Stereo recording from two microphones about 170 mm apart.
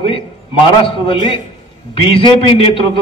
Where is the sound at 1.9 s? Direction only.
30° left (ahead or behind).